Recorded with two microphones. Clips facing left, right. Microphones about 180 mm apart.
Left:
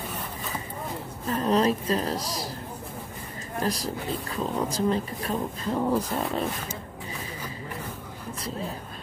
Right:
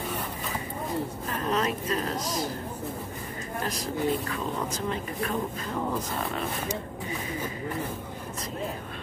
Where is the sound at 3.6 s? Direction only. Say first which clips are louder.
Right 1 dB; 35° left (ahead or behind).